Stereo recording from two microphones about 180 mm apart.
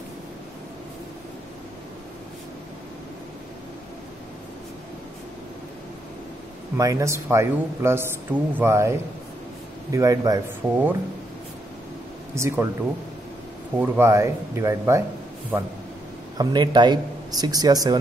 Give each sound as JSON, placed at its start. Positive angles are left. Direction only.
{"t": 6.8, "sound": "speech", "side_deg": -15}
{"t": 12.4, "sound": "speech", "side_deg": -15}
{"t": 13.7, "sound": "speech", "side_deg": -10}
{"t": 16.3, "sound": "speech", "side_deg": -25}